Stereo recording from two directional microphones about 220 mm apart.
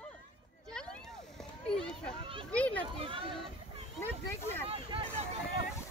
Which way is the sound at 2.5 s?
5° left (ahead or behind).